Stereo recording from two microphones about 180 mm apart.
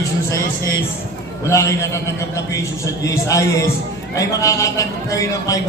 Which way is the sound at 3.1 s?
15° left (ahead or behind).